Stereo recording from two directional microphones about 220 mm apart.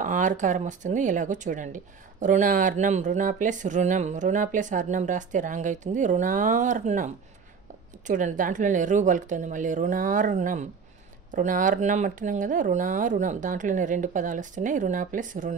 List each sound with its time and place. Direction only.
0.0 s speech: 35° right (ahead or behind)
8.1 s speech: 35° right (ahead or behind)